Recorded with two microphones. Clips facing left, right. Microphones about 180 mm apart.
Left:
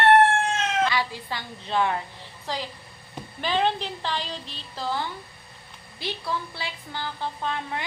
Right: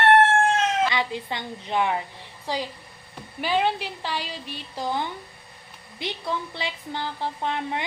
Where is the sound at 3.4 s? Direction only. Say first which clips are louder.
Right 1 dB; 10° right (ahead or behind).